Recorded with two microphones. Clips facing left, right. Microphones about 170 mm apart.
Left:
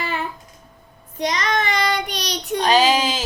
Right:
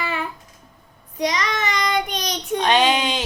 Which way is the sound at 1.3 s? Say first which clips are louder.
Left 2 dB; 50° left (ahead or behind).